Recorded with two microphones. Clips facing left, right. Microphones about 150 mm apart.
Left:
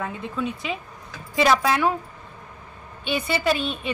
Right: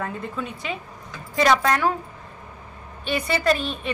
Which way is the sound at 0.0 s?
Centre (ahead or behind).